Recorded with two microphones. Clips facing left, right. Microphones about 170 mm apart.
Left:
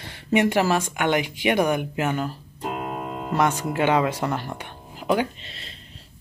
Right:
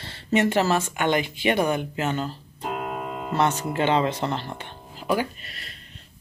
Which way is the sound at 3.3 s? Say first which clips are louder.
Left 1 dB; 10° left (ahead or behind).